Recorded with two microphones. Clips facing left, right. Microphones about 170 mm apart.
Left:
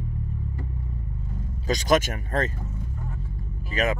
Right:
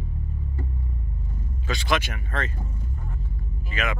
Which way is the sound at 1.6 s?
40° left (ahead or behind).